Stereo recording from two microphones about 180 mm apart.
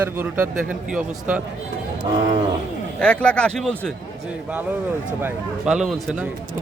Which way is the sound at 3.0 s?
5° left (ahead or behind).